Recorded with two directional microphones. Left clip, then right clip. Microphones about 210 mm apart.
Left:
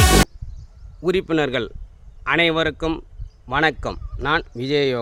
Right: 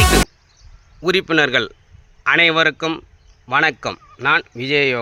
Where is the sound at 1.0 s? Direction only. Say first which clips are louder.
Right 4 dB; 5° left (ahead or behind).